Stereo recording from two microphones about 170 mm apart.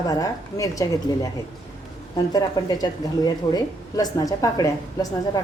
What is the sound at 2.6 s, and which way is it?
A woman's voice, 25° left (ahead or behind).